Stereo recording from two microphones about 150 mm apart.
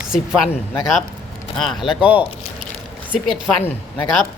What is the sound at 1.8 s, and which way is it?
Speech, 5° right (ahead or behind).